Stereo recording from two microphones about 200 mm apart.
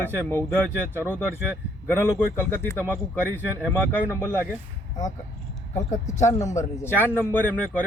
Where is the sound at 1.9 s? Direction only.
10° left (ahead or behind).